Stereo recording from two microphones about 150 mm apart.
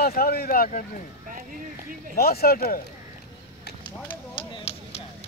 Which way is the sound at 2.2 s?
90° left.